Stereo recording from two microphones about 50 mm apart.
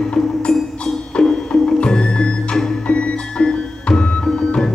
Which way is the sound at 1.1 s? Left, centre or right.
Centre.